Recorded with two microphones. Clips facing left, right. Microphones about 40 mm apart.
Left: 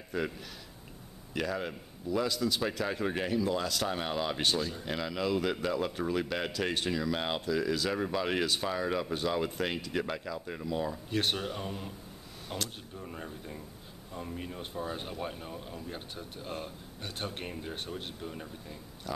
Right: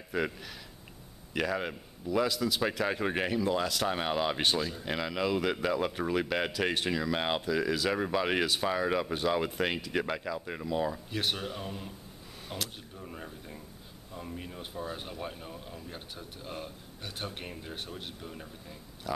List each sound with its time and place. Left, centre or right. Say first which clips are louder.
0.1 s speech: right 2 dB; centre
1.3 s speech: right 2 dB; centre
3.4 s speech: right 2 dB; centre